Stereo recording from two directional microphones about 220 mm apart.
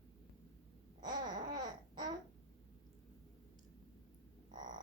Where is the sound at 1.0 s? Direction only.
20° right (ahead or behind).